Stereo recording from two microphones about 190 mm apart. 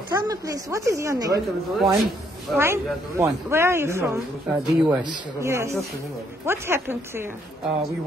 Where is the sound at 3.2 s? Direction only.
15° right (ahead or behind).